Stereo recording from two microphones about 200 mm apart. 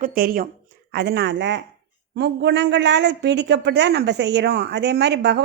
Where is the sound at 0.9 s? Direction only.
55° right (ahead or behind).